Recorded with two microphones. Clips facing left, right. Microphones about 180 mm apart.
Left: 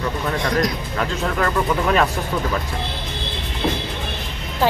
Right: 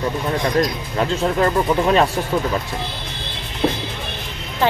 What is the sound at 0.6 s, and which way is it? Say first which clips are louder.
Speech: right 2 dB; 30° right (ahead or behind).